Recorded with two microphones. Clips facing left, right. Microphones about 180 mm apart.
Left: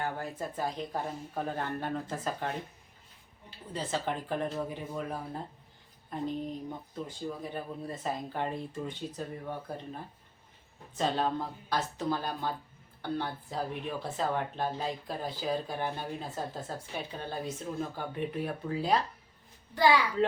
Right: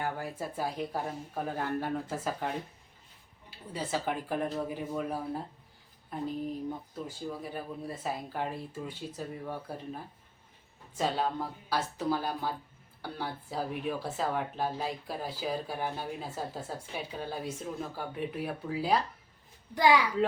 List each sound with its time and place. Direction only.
0.0 s speech: 10° right (ahead or behind)
3.7 s speech: 10° right (ahead or behind)
6.1 s a sound: 5° right (ahead or behind)
7.3 s speech: 5° right (ahead or behind)
19.7 s speech: 15° right (ahead or behind)